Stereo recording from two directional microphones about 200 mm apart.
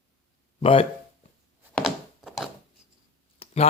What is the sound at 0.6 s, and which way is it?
Speech, 30° left (ahead or behind).